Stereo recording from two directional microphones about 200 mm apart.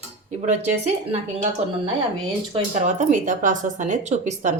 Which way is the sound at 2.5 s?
35° right (ahead or behind).